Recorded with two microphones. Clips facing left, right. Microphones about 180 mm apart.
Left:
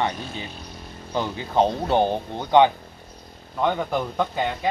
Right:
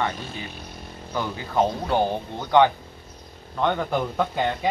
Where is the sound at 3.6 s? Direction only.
5° left (ahead or behind).